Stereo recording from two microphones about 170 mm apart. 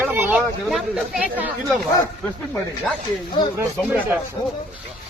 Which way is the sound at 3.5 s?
10° right (ahead or behind).